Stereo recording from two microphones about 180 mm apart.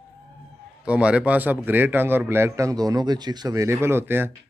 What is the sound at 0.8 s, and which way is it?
A man's voice, 5° right (ahead or behind).